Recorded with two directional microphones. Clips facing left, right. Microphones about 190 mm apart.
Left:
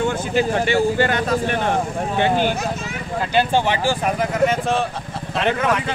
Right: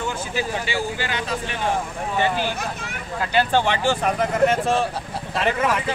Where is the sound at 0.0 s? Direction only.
55° left (ahead or behind).